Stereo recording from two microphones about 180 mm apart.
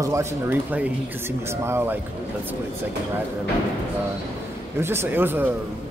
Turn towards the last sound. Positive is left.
turn(degrees=-10)  # may be behind; listen again after turning